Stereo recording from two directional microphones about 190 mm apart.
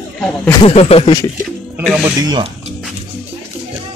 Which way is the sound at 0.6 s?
30° left (ahead or behind).